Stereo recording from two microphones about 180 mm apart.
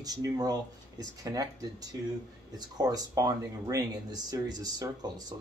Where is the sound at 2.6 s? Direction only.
20° right (ahead or behind).